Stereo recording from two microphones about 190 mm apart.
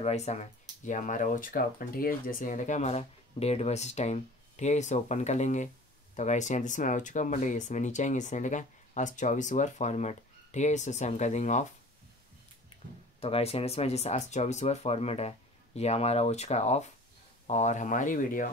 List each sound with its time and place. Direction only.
0.0 s speech: 35° left (ahead or behind)
13.2 s speech: 30° left (ahead or behind)